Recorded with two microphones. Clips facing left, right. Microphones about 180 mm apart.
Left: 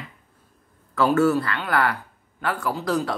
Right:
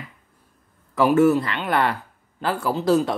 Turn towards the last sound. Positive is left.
turn(degrees=-25)  # may be behind; listen again after turning